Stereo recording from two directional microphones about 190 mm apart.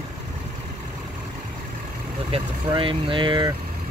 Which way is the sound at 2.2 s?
30° right (ahead or behind).